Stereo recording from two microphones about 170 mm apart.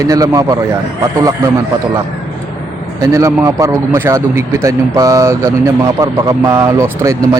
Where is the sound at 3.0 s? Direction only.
20° right (ahead or behind).